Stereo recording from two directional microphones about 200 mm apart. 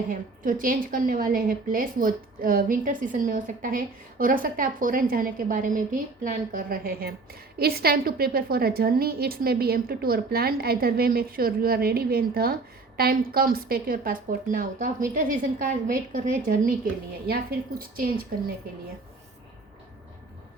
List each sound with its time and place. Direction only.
0.1 s a woman's voice: 45° right (ahead or behind)